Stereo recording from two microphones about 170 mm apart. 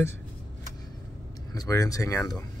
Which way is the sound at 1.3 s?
20° left (ahead or behind).